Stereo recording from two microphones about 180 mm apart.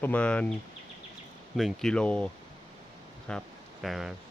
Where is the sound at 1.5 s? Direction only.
Centre (ahead or behind).